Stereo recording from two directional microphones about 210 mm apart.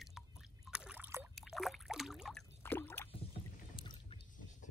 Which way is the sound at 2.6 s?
10° left (ahead or behind).